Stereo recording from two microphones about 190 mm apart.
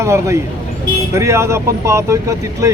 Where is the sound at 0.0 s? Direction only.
15° right (ahead or behind).